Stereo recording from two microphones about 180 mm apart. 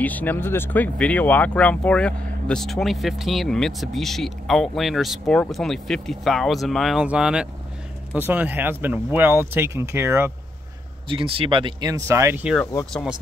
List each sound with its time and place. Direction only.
0.0 s speech: 10° left (ahead or behind); by 10.3 s 15° right (ahead or behind)
11.1 s speech: 30° right (ahead or behind)